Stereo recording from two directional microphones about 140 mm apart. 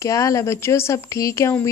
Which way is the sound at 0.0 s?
25° left (ahead or behind).